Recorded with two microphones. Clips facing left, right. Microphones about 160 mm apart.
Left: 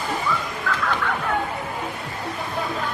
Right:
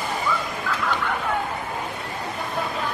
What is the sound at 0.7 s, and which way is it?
Fowl, 10° right (ahead or behind).